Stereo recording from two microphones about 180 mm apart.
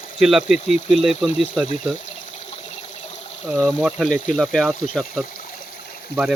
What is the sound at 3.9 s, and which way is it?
Speech, centre (ahead or behind).